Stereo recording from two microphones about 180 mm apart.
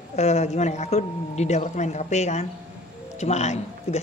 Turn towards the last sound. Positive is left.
turn(degrees=40)  # may be behind; listen again after turning